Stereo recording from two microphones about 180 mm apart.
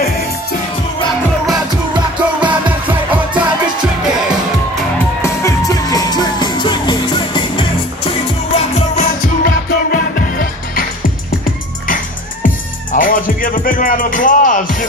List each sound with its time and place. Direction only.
2.4 s music: 10° right (ahead or behind)
5.2 s music: 15° left (ahead or behind)
8.5 s music: 40° left (ahead or behind)
12.9 s music: 50° left (ahead or behind)